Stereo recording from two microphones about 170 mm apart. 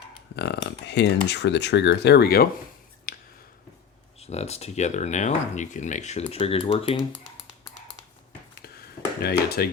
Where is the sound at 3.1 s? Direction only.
60° left (ahead or behind).